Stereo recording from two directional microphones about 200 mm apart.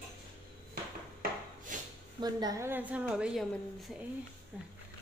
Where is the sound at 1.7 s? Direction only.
40° right (ahead or behind).